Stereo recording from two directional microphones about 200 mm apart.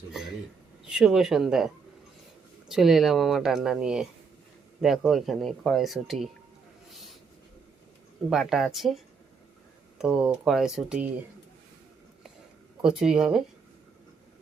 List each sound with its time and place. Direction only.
0.1 s speech: 5° right (ahead or behind)
8.3 s speech: centre (ahead or behind)
10.0 s speech: 5° right (ahead or behind)
12.8 s speech: 5° right (ahead or behind)